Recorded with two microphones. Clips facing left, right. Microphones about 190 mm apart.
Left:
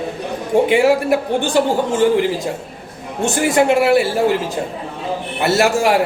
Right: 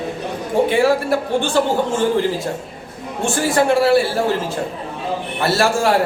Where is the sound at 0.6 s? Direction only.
15° left (ahead or behind).